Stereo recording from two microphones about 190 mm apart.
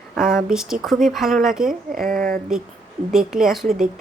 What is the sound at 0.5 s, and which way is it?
A woman's voice, centre (ahead or behind).